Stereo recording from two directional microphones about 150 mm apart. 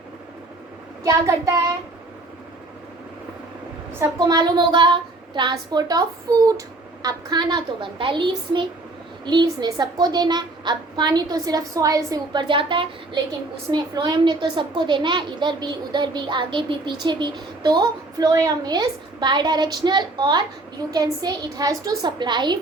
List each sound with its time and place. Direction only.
4.2 s a woman's voice: 25° right (ahead or behind)